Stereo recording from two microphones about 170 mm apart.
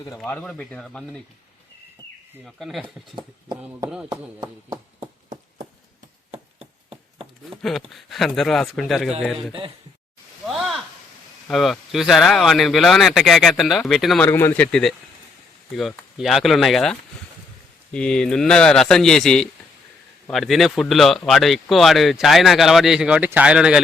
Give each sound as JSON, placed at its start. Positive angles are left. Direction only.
{"t": 0.2, "sound": "speech", "side_deg": 5}
{"t": 2.4, "sound": "speech", "side_deg": 0}
{"t": 6.3, "sound": "chop", "side_deg": -35}
{"t": 7.5, "sound": "speech", "side_deg": 0}
{"t": 9.5, "sound": "speech", "side_deg": -30}
{"t": 10.4, "sound": "a sound", "side_deg": 0}
{"t": 11.4, "sound": "speech", "side_deg": 0}
{"t": 14.3, "sound": "speech", "side_deg": 15}